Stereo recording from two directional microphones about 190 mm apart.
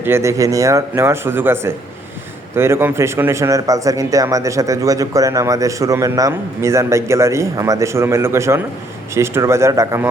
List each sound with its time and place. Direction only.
0.0 s a man's voice: 15° right (ahead or behind)